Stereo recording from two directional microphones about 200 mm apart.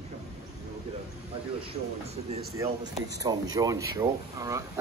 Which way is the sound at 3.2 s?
20° right (ahead or behind).